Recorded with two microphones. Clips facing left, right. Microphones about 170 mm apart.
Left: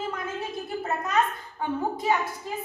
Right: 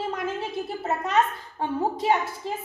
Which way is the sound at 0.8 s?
30° right (ahead or behind).